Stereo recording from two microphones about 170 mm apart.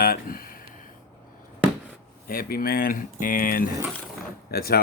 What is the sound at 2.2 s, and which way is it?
Speech, 60° left (ahead or behind).